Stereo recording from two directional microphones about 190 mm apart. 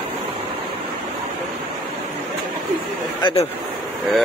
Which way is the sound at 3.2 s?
35° left (ahead or behind).